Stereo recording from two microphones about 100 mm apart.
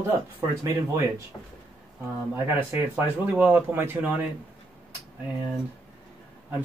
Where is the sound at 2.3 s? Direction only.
20° right (ahead or behind).